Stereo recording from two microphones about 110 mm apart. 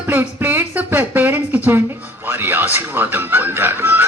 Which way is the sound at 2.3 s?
20° right (ahead or behind).